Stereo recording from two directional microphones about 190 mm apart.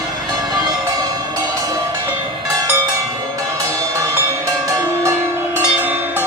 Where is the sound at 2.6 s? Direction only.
20° right (ahead or behind).